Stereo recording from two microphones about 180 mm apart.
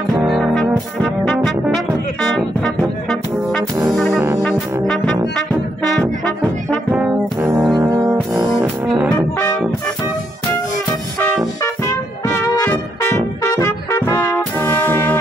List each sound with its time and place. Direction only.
0.3 s brass instrument: centre (ahead or behind)
1.9 s music: centre (ahead or behind)
3.9 s brass instrument: centre (ahead or behind)
4.7 s brass instrument: 20° right (ahead or behind)
6.7 s brass instrument: 5° right (ahead or behind)
8.8 s music: centre (ahead or behind)
12.6 s brass instrument: 15° left (ahead or behind)